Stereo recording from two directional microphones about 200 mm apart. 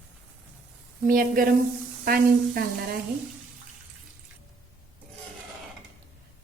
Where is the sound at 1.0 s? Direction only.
45° right (ahead or behind).